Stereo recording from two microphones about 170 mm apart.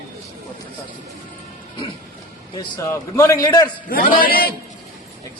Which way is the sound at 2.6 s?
20° left (ahead or behind).